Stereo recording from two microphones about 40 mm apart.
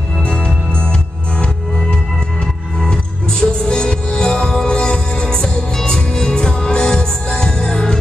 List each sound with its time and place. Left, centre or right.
0.2 s music: left
2.4 s music: centre